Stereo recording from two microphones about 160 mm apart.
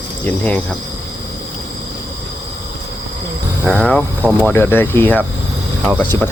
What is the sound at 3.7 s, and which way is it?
Speech, 5° left (ahead or behind).